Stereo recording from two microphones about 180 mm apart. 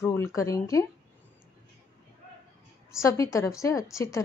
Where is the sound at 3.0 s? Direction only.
15° left (ahead or behind).